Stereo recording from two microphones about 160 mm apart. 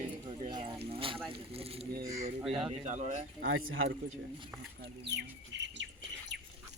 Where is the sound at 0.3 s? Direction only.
35° right (ahead or behind).